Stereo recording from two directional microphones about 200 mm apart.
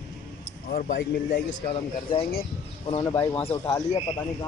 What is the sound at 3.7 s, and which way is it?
Speech, 25° left (ahead or behind).